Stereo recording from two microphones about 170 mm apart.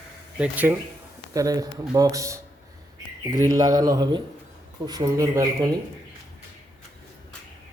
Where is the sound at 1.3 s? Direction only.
20° right (ahead or behind).